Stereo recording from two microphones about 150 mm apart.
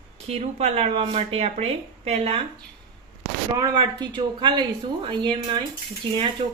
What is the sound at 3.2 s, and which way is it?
Speech, 25° right (ahead or behind).